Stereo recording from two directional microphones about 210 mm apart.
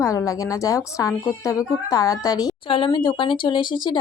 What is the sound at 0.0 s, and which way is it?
Speech, 15° left (ahead or behind).